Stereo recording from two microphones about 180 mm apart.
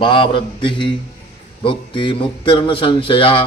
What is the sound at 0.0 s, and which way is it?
A man's voice, 30° left (ahead or behind).